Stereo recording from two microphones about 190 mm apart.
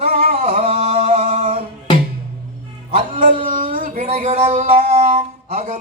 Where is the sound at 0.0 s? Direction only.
30° right (ahead or behind).